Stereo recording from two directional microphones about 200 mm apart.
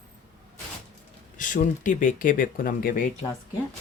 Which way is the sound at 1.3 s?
40° left (ahead or behind).